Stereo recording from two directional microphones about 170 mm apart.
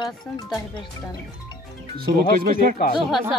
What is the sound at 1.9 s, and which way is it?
Speech, 65° right (ahead or behind).